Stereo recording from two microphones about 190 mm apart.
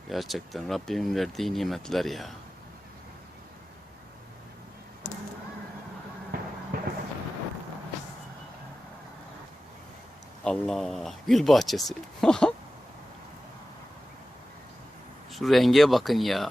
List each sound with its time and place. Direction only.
0.1 s speech: centre (ahead or behind)
6.3 s a sound: 50° right (ahead or behind)
10.4 s speech: 5° left (ahead or behind)
15.3 s speech: centre (ahead or behind)